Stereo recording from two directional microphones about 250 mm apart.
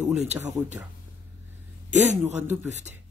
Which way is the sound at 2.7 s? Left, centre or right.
Right.